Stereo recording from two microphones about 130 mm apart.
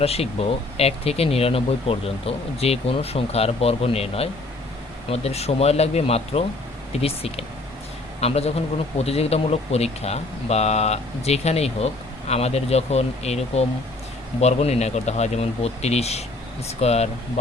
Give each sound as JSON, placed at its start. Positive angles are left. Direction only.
{"t": 0.0, "sound": "speech", "side_deg": 50}